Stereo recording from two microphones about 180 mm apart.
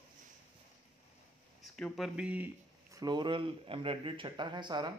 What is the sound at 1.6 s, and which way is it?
Speech, centre (ahead or behind).